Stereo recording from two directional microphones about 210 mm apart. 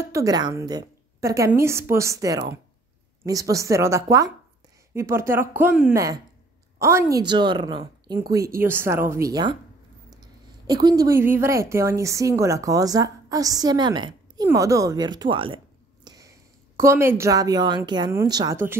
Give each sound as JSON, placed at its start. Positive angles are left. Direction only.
{"t": 0.0, "sound": "a woman's voice", "side_deg": -15}